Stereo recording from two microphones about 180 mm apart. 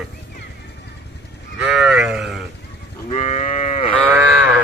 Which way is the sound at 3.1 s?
40° left (ahead or behind).